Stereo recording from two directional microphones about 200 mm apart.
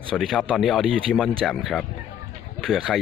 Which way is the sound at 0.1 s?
Centre (ahead or behind).